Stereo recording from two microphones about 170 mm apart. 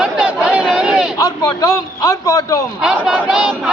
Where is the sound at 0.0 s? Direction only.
5° right (ahead or behind).